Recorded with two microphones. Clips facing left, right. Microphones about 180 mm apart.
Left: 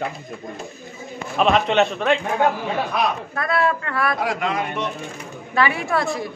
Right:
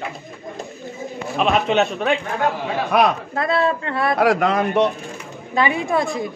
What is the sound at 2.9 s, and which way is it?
Speech, 65° right (ahead or behind).